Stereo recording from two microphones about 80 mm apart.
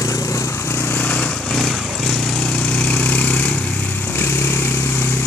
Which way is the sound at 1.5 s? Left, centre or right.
Centre.